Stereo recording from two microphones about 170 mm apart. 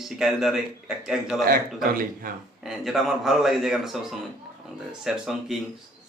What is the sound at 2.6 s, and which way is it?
A man's voice, centre (ahead or behind).